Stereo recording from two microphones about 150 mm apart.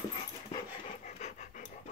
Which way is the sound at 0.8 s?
50° left (ahead or behind).